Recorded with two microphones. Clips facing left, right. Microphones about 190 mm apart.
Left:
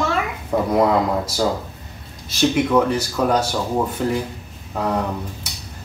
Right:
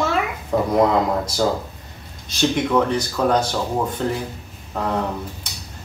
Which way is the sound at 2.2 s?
5° left (ahead or behind).